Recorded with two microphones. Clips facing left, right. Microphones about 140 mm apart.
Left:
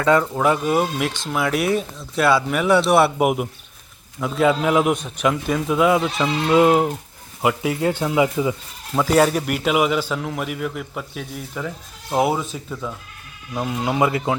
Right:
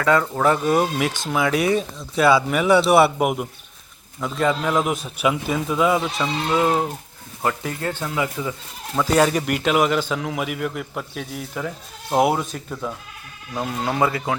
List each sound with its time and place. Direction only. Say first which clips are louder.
0.0 s speech: left 2 dB; 20° left (ahead or behind)
0.3 s speech: even; 10° left (ahead or behind)
6.5 s speech: left 6 dB; 15° left (ahead or behind); by 13.0 s 5° right (ahead or behind)
13.6 s speech: left 1 dB; 10° left (ahead or behind)